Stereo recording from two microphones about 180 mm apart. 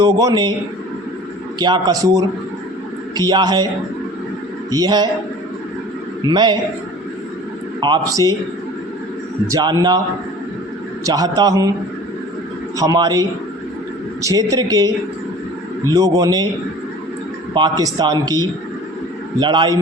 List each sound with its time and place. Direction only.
0.0 s a man's voice: 20° right (ahead or behind)
1.5 s a man's voice: 25° right (ahead or behind)
4.7 s a man's voice: 25° right (ahead or behind)
6.2 s a man's voice: 25° right (ahead or behind)
7.8 s a man's voice: 20° right (ahead or behind)
9.5 s a man's voice: 20° right (ahead or behind)
11.0 s a man's voice: 20° right (ahead or behind)
12.7 s a man's voice: 20° right (ahead or behind)
17.5 s a man's voice: 20° right (ahead or behind)